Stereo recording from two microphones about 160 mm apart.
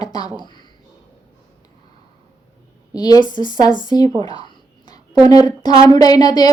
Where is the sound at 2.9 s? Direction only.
25° left (ahead or behind).